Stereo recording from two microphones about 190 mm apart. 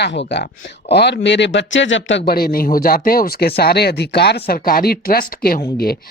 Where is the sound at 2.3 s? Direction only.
50° left (ahead or behind).